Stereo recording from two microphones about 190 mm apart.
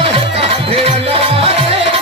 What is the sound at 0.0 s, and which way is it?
Music, 30° right (ahead or behind).